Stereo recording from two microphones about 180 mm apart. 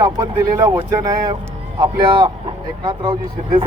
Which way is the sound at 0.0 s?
20° right (ahead or behind).